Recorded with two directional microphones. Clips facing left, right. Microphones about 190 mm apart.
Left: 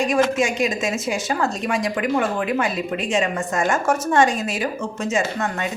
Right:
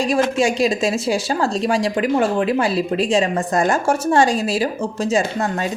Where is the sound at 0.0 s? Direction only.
35° right (ahead or behind).